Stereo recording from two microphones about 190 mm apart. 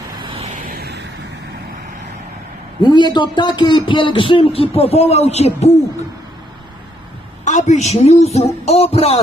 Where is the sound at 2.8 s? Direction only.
25° left (ahead or behind).